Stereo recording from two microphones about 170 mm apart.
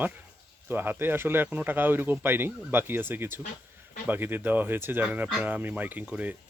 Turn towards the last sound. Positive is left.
turn(degrees=-10)  # may be behind; listen again after turning